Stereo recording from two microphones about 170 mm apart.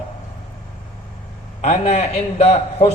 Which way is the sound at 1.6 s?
35° left (ahead or behind).